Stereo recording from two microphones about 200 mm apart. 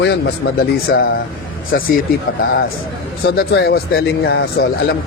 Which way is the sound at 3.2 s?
50° left (ahead or behind).